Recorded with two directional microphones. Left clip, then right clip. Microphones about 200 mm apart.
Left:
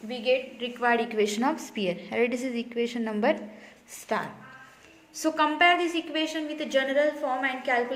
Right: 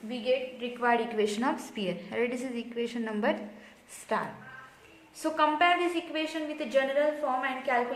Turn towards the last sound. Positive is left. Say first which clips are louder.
# left 2 dB
turn(degrees=40)  # may be behind; listen again after turning